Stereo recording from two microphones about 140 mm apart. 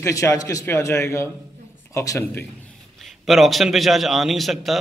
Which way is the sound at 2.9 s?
Centre (ahead or behind).